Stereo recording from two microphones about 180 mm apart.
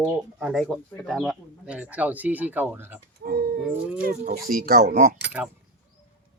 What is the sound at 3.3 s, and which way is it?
Bird, 60° right (ahead or behind).